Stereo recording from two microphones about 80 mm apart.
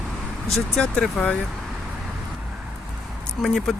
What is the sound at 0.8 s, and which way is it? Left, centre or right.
Speech, centre.